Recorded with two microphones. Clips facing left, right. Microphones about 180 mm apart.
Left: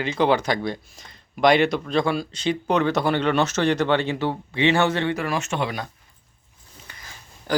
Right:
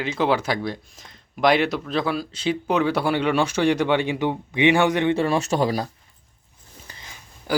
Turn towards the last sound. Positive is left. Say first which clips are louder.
# even
turn(degrees=-5)  # may be behind; listen again after turning